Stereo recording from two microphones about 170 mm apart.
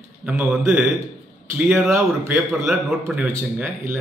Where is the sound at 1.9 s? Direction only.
15° right (ahead or behind).